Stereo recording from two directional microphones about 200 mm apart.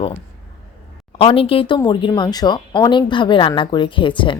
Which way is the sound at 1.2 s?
25° left (ahead or behind).